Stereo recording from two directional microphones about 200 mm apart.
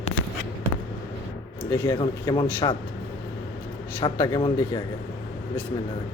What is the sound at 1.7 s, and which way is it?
Speech, 15° left (ahead or behind).